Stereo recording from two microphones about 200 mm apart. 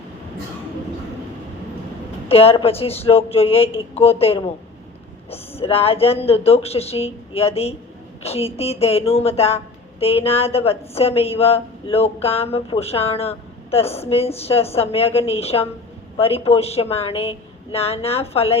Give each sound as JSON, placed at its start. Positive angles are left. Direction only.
{"t": 2.2, "sound": "a woman's voice", "side_deg": 30}